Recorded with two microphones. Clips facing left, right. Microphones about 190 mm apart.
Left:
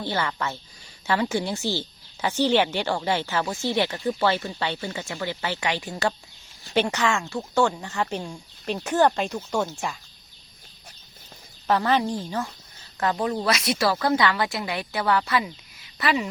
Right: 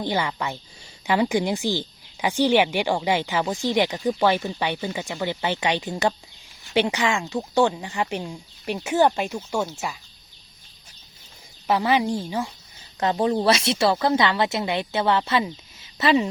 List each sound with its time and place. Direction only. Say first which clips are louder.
0.0 s speech: right 2 dB; 15° right (ahead or behind)
11.7 s speech: right 1 dB; 10° right (ahead or behind)
13.0 s speech: right 3 dB; 25° right (ahead or behind)